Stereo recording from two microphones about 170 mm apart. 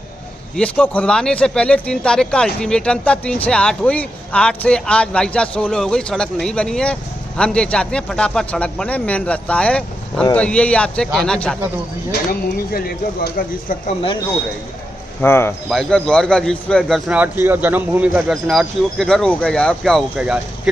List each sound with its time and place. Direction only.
0.6 s speech: 5° left (ahead or behind)
12.1 s speech: 60° left (ahead or behind)
15.2 s speech: 15° left (ahead or behind)
15.7 s speech: 5° left (ahead or behind)
17.1 s speech: 10° right (ahead or behind)